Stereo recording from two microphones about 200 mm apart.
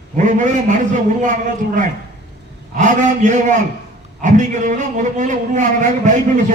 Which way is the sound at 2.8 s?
40° right (ahead or behind).